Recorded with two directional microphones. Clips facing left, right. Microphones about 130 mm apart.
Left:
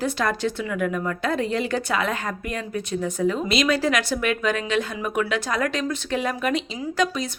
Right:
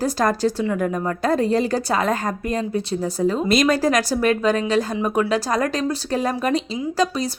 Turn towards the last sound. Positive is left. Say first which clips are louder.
# right 3 dB
turn(degrees=-35)  # may be behind; listen again after turning